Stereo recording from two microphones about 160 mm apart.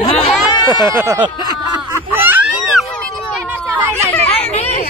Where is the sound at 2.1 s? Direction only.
10° right (ahead or behind).